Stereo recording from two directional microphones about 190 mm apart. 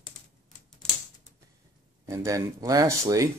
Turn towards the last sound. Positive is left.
turn(degrees=-15)  # may be behind; listen again after turning